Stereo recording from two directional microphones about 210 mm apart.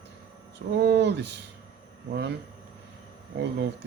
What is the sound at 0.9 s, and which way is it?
Speech, 55° right (ahead or behind).